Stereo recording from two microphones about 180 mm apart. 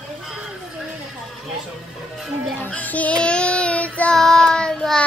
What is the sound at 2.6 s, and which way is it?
Child singing, 10° left (ahead or behind).